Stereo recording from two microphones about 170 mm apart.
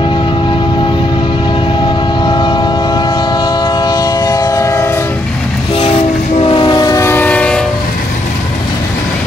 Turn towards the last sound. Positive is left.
turn(degrees=5)  # may be behind; listen again after turning